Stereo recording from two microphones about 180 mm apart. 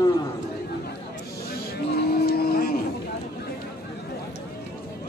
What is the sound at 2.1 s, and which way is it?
Vehicle, 60° left (ahead or behind).